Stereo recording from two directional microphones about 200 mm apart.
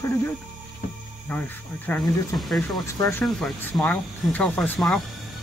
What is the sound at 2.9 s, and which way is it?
Speech, 15° left (ahead or behind).